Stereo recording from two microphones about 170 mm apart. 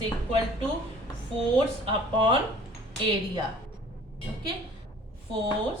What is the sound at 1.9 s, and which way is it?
Speech, 30° right (ahead or behind).